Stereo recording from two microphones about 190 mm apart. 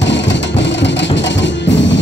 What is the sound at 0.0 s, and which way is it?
Music, 70° left (ahead or behind).